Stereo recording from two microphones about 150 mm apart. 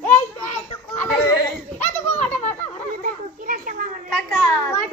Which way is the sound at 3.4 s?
65° right (ahead or behind).